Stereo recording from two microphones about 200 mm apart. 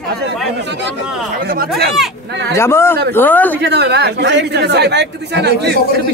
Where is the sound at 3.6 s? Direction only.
55° right (ahead or behind).